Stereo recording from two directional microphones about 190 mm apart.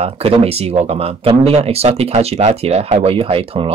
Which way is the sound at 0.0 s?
30° right (ahead or behind).